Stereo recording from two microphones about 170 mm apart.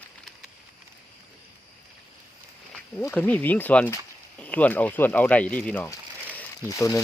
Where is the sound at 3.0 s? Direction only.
10° left (ahead or behind).